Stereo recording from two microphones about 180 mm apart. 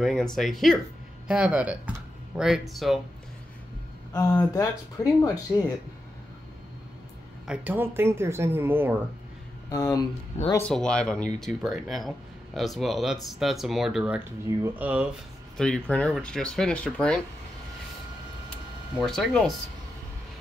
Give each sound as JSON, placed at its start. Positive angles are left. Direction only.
{"t": 0.0, "sound": "speech", "side_deg": 0}
{"t": 4.1, "sound": "speech", "side_deg": 20}
{"t": 7.4, "sound": "speech", "side_deg": -10}
{"t": 9.7, "sound": "speech", "side_deg": 15}
{"t": 10.7, "sound": "speech", "side_deg": 5}
{"t": 18.9, "sound": "speech", "side_deg": 0}